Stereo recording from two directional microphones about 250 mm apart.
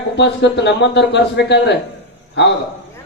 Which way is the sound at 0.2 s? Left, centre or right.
Left.